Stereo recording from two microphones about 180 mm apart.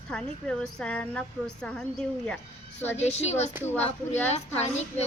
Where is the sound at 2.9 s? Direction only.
35° left (ahead or behind).